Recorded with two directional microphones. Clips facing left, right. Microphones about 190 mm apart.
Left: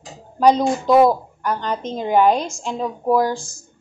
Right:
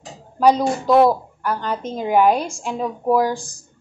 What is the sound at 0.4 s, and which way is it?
A woman's voice, 5° right (ahead or behind).